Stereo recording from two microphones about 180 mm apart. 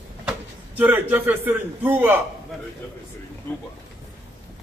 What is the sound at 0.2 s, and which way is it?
Speech, 10° right (ahead or behind).